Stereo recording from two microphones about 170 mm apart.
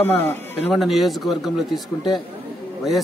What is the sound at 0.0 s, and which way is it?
Speech, 10° left (ahead or behind).